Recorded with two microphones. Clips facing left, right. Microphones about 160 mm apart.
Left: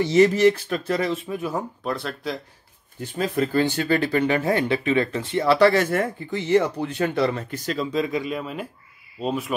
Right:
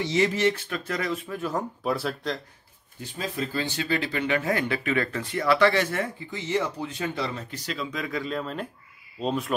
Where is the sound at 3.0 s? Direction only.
55° left (ahead or behind).